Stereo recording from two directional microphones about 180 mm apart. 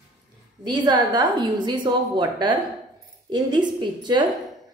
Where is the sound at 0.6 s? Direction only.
25° right (ahead or behind).